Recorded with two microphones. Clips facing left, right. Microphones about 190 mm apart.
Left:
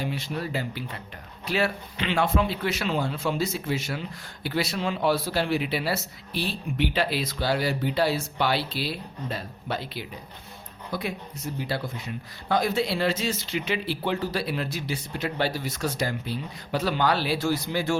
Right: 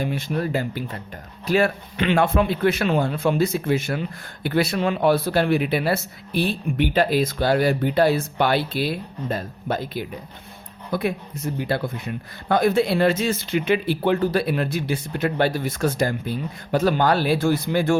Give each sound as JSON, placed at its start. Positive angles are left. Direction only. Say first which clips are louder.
{"t": 0.0, "sound": "a man's voice", "louder": "right 6 dB", "side_deg": -50}